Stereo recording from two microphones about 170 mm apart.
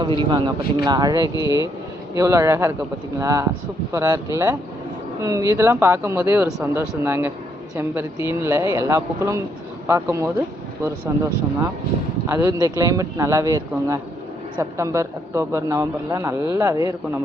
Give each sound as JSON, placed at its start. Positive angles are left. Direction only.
{"t": 0.0, "sound": "speech", "side_deg": -30}
{"t": 12.3, "sound": "speech", "side_deg": -20}